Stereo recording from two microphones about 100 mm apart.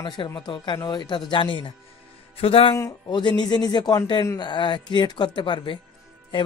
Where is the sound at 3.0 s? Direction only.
45° left (ahead or behind).